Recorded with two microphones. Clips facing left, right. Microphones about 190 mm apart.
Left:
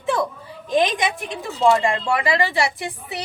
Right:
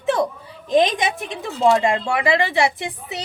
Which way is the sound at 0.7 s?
20° right (ahead or behind).